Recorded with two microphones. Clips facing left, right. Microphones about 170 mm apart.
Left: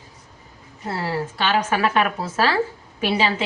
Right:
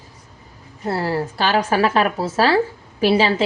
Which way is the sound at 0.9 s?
40° right (ahead or behind).